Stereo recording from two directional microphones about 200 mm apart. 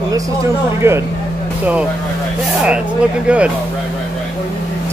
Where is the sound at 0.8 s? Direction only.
10° right (ahead or behind).